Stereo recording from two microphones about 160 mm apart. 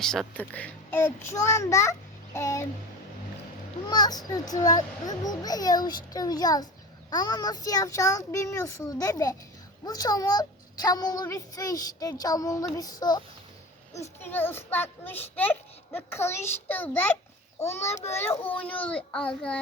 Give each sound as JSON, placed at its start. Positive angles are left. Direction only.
{"t": 0.0, "sound": "a child's voice", "side_deg": 5}
{"t": 3.8, "sound": "a child's voice", "side_deg": 25}
{"t": 14.2, "sound": "a child's voice", "side_deg": 15}